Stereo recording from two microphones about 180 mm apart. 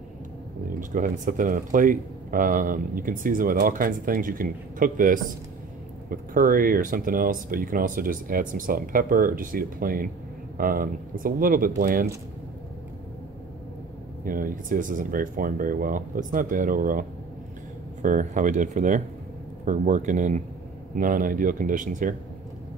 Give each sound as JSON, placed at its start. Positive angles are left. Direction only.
{"t": 0.7, "sound": "speech", "side_deg": -45}
{"t": 14.2, "sound": "speech", "side_deg": -50}
{"t": 18.0, "sound": "speech", "side_deg": -45}